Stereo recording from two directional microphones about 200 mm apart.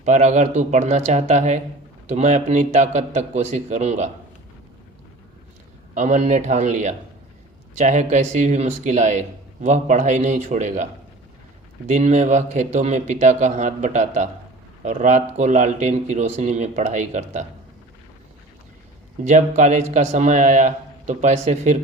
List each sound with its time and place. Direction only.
0.0 s speech: 35° right (ahead or behind)
5.9 s speech: 35° right (ahead or behind)
11.9 s speech: 35° right (ahead or behind)
19.2 s speech: 35° right (ahead or behind)